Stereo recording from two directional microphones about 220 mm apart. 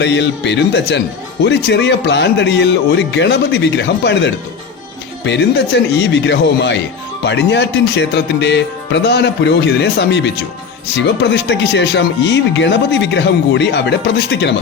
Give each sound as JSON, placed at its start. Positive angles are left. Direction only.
{"t": 0.0, "sound": "speech", "side_deg": 55}